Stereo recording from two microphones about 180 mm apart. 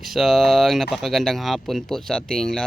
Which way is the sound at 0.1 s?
Centre (ahead or behind).